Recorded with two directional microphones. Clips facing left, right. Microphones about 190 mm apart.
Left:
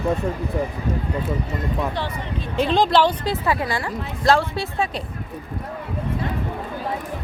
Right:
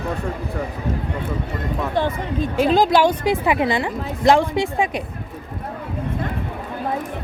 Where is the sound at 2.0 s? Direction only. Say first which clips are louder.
Right 7 dB; 50° right (ahead or behind).